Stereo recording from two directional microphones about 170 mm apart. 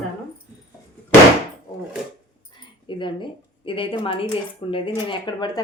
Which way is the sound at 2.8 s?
30° left (ahead or behind).